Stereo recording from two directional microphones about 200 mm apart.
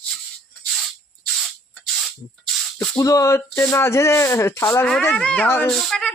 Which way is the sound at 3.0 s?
15° left (ahead or behind).